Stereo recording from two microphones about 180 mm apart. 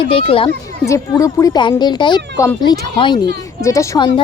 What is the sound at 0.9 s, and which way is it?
A woman's voice, 20° left (ahead or behind).